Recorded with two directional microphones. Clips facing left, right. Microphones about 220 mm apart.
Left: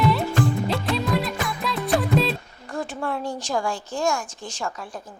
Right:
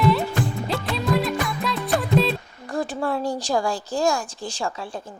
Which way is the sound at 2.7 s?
35° right (ahead or behind).